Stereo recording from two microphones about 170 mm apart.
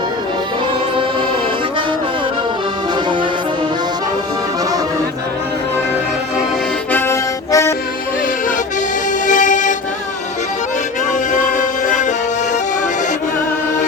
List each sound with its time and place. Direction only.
6.9 s accordion: 15° left (ahead or behind)
9.2 s music: 50° left (ahead or behind)
11.1 s music: 50° left (ahead or behind)